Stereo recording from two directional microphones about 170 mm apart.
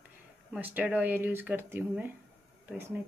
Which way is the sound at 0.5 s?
10° right (ahead or behind).